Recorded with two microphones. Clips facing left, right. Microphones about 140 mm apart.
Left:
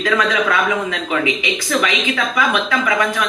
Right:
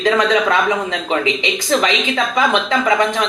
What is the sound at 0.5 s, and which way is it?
Speech, 35° right (ahead or behind).